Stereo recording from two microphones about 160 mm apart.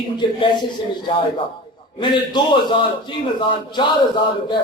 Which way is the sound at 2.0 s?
30° left (ahead or behind).